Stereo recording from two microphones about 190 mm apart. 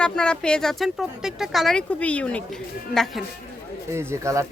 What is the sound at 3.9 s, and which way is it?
Speech, 15° right (ahead or behind).